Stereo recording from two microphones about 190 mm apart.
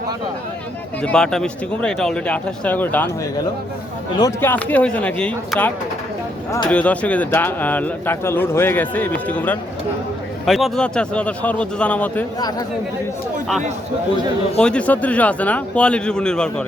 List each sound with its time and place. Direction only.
1.0 s speech: 5° left (ahead or behind)
4.2 s speech: 10° left (ahead or behind)
12.4 s speech: 20° left (ahead or behind)
14.6 s speech: 5° left (ahead or behind)